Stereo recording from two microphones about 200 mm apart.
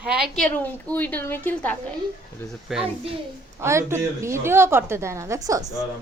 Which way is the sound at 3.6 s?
15° right (ahead or behind).